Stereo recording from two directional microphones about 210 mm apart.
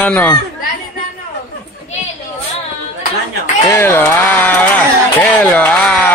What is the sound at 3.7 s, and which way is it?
Speech, 10° left (ahead or behind).